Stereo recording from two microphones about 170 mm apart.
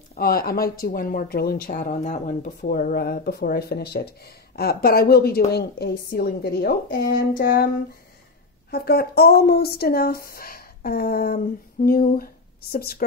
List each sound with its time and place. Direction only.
0.1 s speech: 60° left (ahead or behind)
8.6 s speech: 65° left (ahead or behind)